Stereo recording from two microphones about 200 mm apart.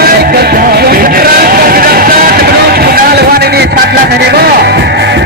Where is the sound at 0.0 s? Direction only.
50° right (ahead or behind).